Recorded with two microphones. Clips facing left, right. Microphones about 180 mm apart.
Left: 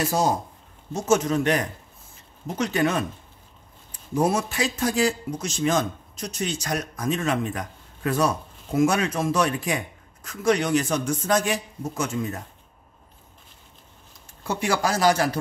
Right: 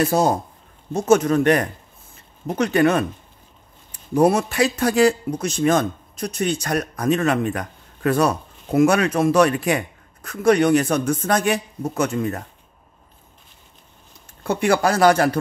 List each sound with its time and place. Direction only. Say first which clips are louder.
0.0 s speech: right 5 dB; 55° right (ahead or behind)
14.4 s speech: right 6 dB; 60° right (ahead or behind)